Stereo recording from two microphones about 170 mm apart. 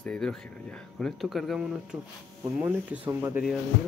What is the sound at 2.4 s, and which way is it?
Speech, 10° right (ahead or behind).